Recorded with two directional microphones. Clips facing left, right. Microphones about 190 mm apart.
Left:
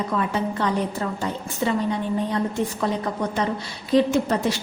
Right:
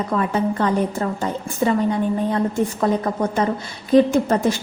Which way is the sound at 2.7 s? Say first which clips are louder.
Right 5 dB; 50° right (ahead or behind).